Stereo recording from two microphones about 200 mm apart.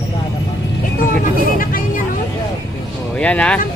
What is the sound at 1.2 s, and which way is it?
Speech, 45° left (ahead or behind).